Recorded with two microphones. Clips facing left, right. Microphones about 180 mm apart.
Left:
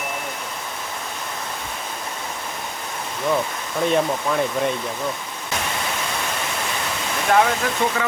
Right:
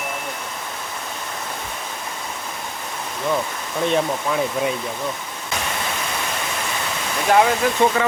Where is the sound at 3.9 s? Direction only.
Centre (ahead or behind).